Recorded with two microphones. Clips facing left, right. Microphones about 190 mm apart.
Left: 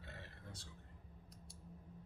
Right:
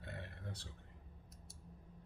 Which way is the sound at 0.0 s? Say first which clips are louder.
Right 5 dB; 60° right (ahead or behind).